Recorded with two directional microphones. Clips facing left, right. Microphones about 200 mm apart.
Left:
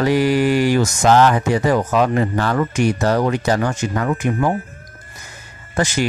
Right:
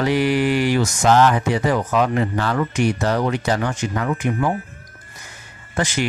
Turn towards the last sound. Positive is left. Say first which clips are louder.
# left 3 dB
turn(degrees=45)  # may be behind; listen again after turning